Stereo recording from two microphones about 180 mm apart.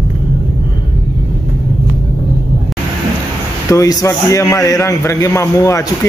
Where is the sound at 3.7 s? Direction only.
20° left (ahead or behind).